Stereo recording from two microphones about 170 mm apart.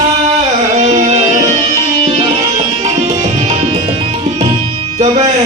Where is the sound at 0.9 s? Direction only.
40° right (ahead or behind).